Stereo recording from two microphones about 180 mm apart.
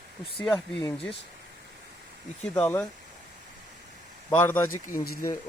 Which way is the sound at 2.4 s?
5° left (ahead or behind).